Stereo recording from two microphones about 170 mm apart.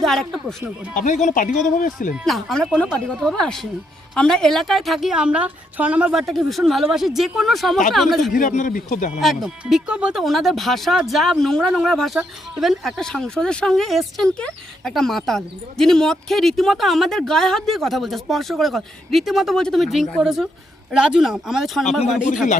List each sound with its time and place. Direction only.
0.0 s speech: centre (ahead or behind)
0.9 s speech: 45° left (ahead or behind)
2.1 s speech: centre (ahead or behind)
8.3 s speech: 50° left (ahead or behind)
9.2 s speech: centre (ahead or behind)